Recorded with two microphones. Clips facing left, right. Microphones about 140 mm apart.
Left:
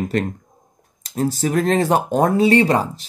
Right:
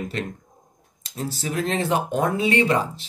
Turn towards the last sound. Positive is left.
turn(degrees=40)  # may be behind; listen again after turning